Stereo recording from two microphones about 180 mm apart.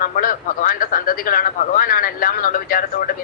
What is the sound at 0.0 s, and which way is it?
Speech, 50° left (ahead or behind).